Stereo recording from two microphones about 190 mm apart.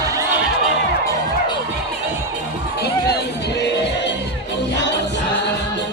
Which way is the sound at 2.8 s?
60° left (ahead or behind).